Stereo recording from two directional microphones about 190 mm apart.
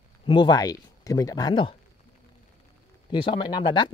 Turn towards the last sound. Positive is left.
turn(degrees=25)  # may be behind; listen again after turning